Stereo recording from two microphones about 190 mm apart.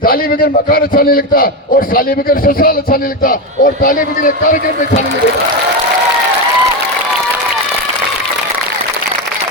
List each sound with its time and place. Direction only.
0.0 s a man's voice: 50° left (ahead or behind)